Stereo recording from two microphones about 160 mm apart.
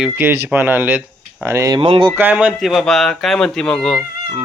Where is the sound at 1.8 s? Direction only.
35° right (ahead or behind).